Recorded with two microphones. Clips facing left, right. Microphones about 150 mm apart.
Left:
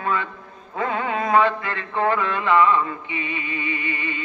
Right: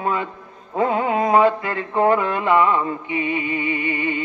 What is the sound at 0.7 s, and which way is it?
Mantra, 25° right (ahead or behind).